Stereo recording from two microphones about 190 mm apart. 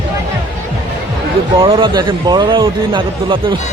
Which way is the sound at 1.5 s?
30° right (ahead or behind).